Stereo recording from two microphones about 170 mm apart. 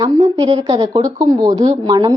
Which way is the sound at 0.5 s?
30° right (ahead or behind).